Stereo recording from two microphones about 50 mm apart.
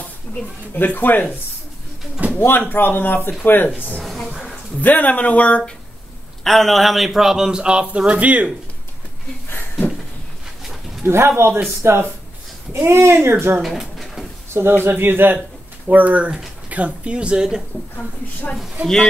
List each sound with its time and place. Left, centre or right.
0.7 s speech: left
2.3 s speech: left
4.3 s a sound: centre
4.8 s speech: left
6.4 s a man's voice: centre; by 8.5 s right
10.6 s a sound: centre
11.1 s speech: right
13.6 s pigeon: centre
14.5 s speech: right
15.9 s speech: right; by 17.6 s centre
17.9 s speech: left